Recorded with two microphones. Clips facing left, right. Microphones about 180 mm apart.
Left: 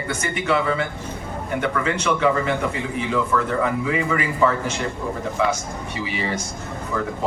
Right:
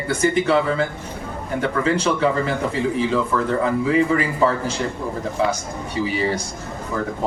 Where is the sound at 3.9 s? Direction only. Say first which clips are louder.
Right 5 dB; 35° right (ahead or behind).